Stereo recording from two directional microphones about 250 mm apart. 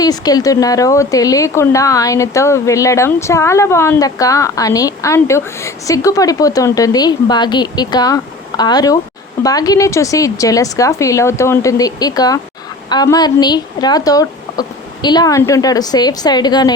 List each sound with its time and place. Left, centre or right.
0.0 s speech: centre